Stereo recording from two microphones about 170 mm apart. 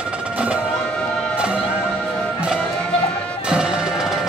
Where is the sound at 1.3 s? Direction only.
5° right (ahead or behind).